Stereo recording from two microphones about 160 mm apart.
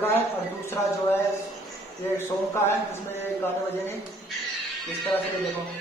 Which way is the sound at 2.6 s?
15° left (ahead or behind).